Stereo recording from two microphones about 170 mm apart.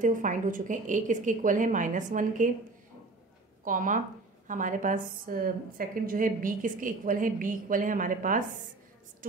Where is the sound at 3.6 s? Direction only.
50° right (ahead or behind).